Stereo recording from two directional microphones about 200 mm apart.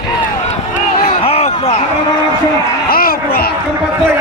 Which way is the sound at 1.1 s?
30° left (ahead or behind).